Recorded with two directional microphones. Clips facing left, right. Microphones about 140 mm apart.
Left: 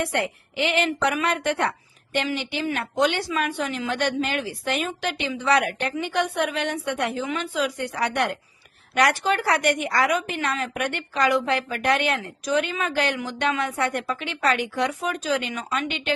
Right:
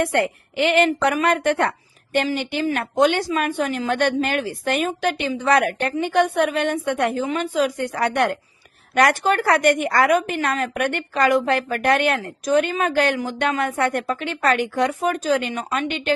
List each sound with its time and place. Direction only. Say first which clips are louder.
0.0 s a woman's voice: right 5 dB; 50° right (ahead or behind)